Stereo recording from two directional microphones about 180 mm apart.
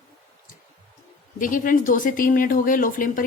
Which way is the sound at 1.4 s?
50° left (ahead or behind).